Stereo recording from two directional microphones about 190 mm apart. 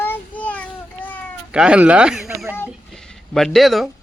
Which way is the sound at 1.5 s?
5° right (ahead or behind).